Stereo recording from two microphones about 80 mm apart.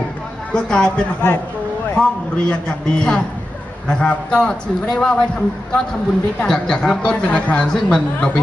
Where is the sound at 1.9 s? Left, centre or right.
Centre.